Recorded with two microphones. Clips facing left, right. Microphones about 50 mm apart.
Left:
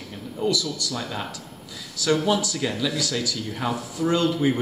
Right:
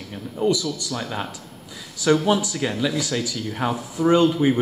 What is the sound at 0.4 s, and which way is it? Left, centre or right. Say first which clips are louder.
Speech: right 3 dB; right.